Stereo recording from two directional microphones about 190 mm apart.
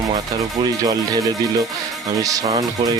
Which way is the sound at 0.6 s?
20° right (ahead or behind).